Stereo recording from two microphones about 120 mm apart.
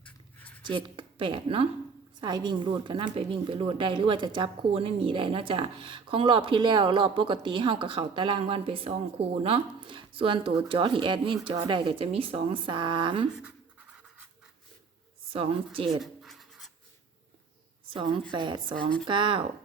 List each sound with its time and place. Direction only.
0.0 s writing: 10° left (ahead or behind)
0.6 s speech: 45° right (ahead or behind)
15.3 s speech: 50° right (ahead or behind)
16.0 s a sound: centre (ahead or behind)
17.9 s a woman's voice: 45° right (ahead or behind)